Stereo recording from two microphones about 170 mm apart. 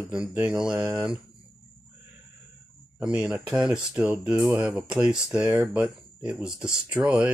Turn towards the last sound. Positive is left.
turn(degrees=-5)  # may be behind; listen again after turning